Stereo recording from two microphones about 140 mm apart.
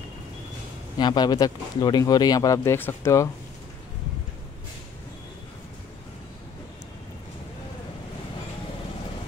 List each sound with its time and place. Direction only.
0.9 s speech: 30° left (ahead or behind)